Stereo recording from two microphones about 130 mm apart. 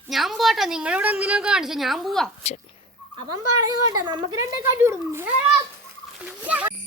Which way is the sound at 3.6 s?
30° right (ahead or behind).